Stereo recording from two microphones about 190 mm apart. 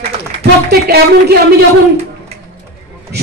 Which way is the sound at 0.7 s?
55° right (ahead or behind).